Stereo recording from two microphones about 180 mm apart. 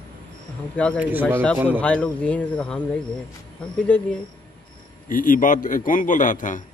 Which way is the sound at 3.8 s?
5° left (ahead or behind).